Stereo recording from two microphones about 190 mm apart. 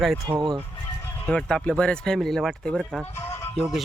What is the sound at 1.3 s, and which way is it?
Speech, 5° left (ahead or behind).